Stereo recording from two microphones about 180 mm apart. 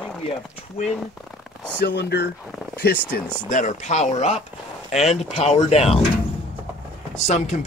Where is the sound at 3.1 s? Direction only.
55° left (ahead or behind).